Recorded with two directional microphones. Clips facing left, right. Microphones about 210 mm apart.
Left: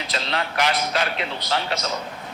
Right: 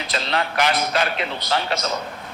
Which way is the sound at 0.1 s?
55° right (ahead or behind).